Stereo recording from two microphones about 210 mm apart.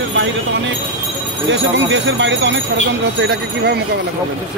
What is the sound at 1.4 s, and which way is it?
A man's voice, 60° right (ahead or behind).